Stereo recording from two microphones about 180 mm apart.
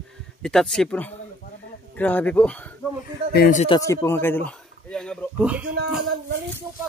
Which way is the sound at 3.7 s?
15° left (ahead or behind).